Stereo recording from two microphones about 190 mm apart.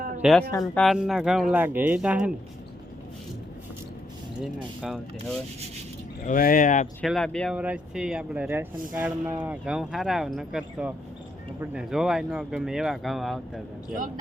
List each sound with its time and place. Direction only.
0.2 s speech: centre (ahead or behind)
4.4 s speech: 5° right (ahead or behind)
6.2 s speech: 45° left (ahead or behind)
7.0 s speech: centre (ahead or behind)